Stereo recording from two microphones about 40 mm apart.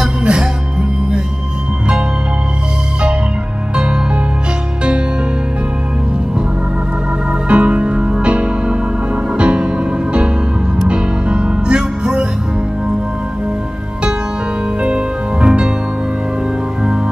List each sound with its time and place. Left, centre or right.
0.0 s music: centre
7.4 s music: right
10.9 s music: right
14.8 s music: right